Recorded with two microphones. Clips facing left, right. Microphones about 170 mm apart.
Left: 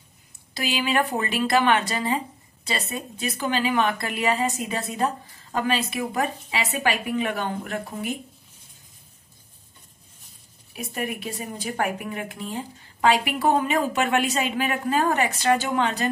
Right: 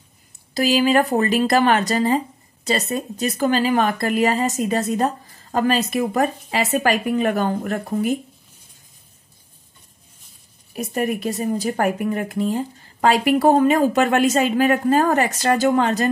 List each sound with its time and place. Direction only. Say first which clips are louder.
0.6 s speech: right 8 dB; 40° right (ahead or behind)
10.7 s speech: right 7 dB; 40° right (ahead or behind)